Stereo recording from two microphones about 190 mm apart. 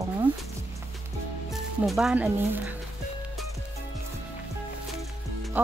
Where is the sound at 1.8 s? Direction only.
Centre (ahead or behind).